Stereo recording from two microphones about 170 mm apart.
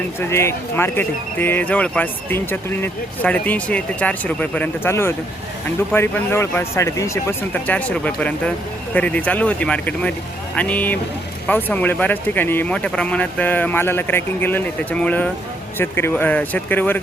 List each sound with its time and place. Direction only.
0.2 s speech: 15° left (ahead or behind)